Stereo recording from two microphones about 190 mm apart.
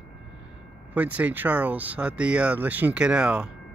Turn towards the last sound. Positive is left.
turn(degrees=-5)  # may be behind; listen again after turning